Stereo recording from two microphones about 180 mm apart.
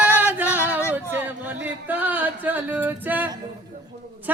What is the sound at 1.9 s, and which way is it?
Male singing, 10° right (ahead or behind).